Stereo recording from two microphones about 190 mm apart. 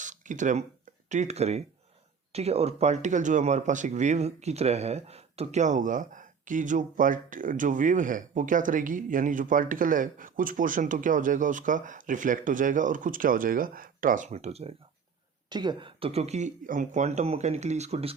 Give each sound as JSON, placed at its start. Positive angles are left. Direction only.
{"t": 0.0, "sound": "a sound", "side_deg": -40}
{"t": 1.1, "sound": "speech", "side_deg": -35}
{"t": 15.4, "sound": "speech", "side_deg": -25}